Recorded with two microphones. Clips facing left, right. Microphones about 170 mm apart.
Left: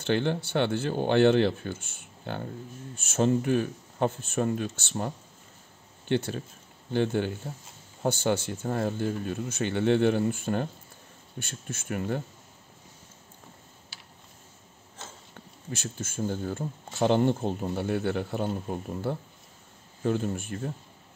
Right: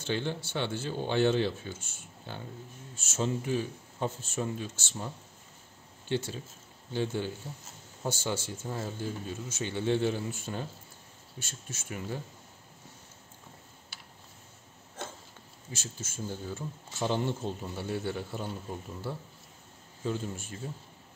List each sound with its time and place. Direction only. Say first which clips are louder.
0.0 s speech: left 6 dB; 60° left (ahead or behind)
15.7 s speech: left 7 dB; 60° left (ahead or behind)